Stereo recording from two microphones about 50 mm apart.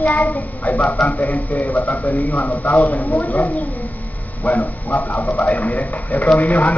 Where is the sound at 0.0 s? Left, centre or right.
Left.